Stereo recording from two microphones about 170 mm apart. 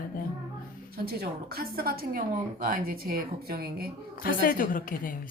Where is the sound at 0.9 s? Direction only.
65° right (ahead or behind).